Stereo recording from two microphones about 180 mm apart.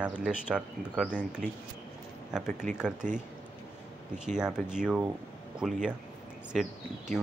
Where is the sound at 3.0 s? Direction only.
45° right (ahead or behind).